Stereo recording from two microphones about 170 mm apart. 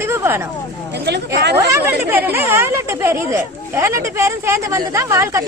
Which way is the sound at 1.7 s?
10° right (ahead or behind).